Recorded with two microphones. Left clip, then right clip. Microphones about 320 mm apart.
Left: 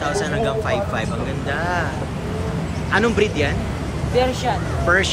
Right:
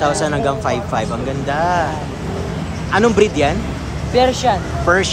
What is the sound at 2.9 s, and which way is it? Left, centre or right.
Speech, centre.